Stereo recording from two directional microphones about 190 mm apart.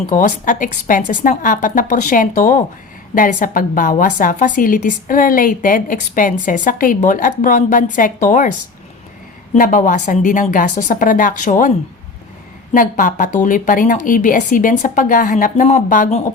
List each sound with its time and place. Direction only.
0.0 s a woman's voice: 45° left (ahead or behind)
12.7 s a woman's voice: 45° left (ahead or behind)